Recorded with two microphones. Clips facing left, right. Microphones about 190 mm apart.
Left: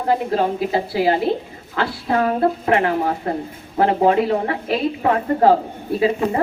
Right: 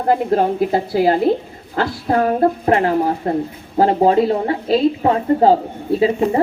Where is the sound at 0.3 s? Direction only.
45° right (ahead or behind).